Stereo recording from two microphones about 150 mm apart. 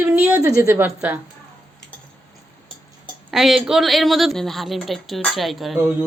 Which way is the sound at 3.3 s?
Centre (ahead or behind).